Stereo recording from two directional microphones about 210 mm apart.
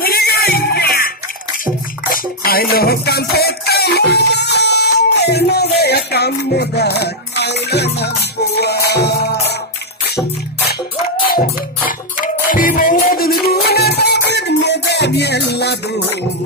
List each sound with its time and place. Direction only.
0.0 s music: 45° left (ahead or behind)
2.1 s music: 45° left (ahead or behind)
12.4 s music: 40° left (ahead or behind)